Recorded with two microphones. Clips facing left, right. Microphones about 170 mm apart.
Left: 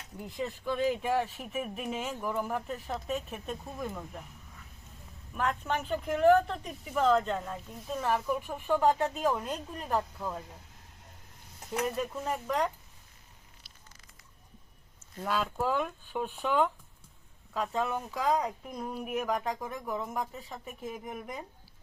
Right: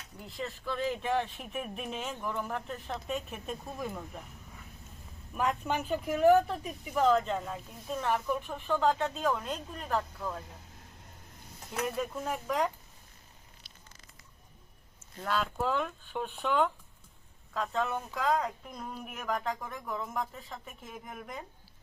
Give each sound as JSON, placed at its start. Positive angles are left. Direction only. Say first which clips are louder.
{"t": 0.2, "sound": "speech", "louder": "left 3 dB", "side_deg": 15}
{"t": 5.3, "sound": "speech", "louder": "right 1 dB", "side_deg": -10}
{"t": 11.9, "sound": "speech", "louder": "left 1 dB", "side_deg": 0}
{"t": 15.2, "sound": "speech", "louder": "left 1 dB", "side_deg": 10}